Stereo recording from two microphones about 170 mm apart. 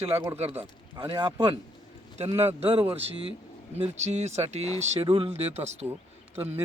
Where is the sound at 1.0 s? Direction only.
25° right (ahead or behind).